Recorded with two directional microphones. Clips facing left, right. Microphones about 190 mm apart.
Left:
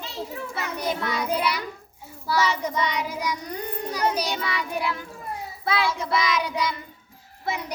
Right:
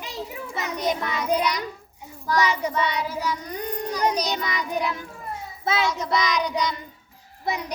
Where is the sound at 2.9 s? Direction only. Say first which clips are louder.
Right 1 dB; 15° left (ahead or behind).